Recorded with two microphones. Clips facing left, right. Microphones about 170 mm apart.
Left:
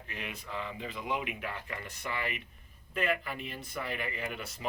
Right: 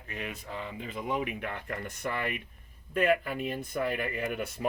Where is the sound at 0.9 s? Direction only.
35° right (ahead or behind).